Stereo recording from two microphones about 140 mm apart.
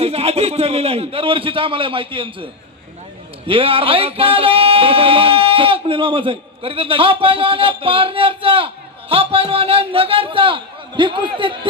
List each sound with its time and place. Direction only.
0.0 s speech: 45° right (ahead or behind)